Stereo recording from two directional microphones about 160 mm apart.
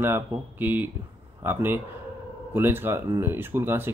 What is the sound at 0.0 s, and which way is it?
Speech, 15° right (ahead or behind).